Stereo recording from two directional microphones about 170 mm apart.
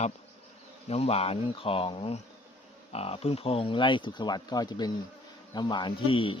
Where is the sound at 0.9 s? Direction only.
35° left (ahead or behind).